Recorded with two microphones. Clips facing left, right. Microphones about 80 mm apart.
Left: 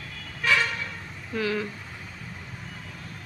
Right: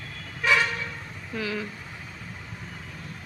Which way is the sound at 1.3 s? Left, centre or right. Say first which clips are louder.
Left 3 dB; centre.